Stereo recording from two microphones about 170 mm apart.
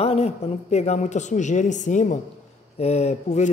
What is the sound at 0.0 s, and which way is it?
A woman's voice, 35° left (ahead or behind).